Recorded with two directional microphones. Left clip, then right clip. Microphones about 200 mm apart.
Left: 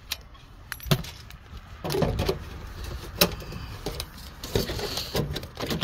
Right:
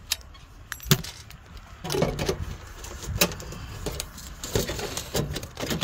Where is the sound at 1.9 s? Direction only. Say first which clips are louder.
Right 1 dB; 25° right (ahead or behind).